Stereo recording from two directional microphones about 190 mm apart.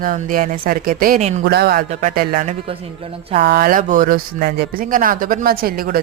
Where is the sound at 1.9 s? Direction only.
40° right (ahead or behind).